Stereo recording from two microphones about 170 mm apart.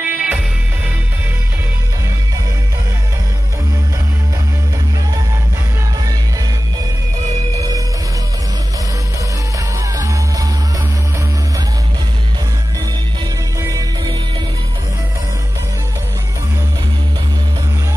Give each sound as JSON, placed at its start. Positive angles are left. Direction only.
{"t": 0.0, "sound": "music", "side_deg": -10}
{"t": 7.5, "sound": "music", "side_deg": -20}